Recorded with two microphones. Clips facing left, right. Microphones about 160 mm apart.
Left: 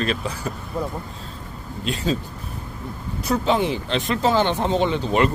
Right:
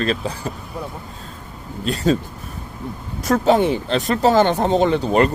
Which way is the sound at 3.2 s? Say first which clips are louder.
Right 5 dB; 45° right (ahead or behind).